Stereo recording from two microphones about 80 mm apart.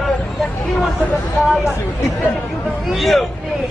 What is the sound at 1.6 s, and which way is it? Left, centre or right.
Speech, left.